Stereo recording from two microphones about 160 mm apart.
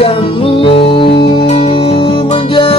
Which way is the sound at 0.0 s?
35° left (ahead or behind).